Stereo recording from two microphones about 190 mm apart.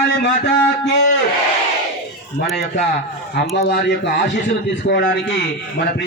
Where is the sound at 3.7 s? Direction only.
60° left (ahead or behind).